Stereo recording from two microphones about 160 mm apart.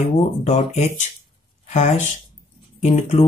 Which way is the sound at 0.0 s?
45° left (ahead or behind).